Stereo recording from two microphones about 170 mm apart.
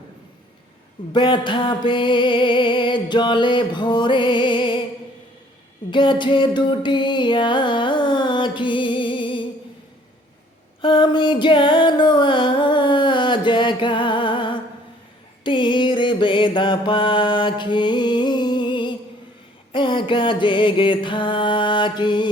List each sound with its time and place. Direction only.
1.1 s music: 25° left (ahead or behind)
5.9 s music: 30° left (ahead or behind)
10.8 s music: 30° left (ahead or behind)
15.4 s mantra: 30° left (ahead or behind)
19.7 s music: 30° left (ahead or behind)